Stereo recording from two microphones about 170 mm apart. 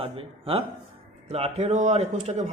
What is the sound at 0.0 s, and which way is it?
A man's voice, 35° right (ahead or behind).